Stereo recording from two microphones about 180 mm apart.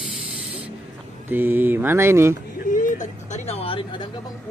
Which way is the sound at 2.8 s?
40° left (ahead or behind).